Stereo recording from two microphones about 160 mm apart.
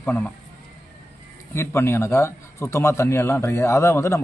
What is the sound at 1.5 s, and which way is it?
A man's voice, 15° left (ahead or behind).